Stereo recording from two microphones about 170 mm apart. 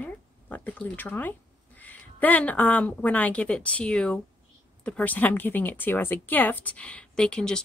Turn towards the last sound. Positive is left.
turn(degrees=5)  # may be behind; listen again after turning